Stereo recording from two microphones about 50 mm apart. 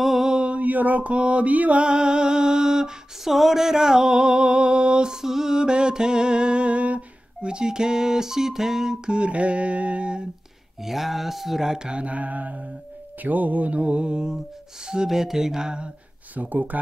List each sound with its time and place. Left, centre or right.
0.0 s mantra: centre
10.8 s mantra: centre
16.3 s speech: right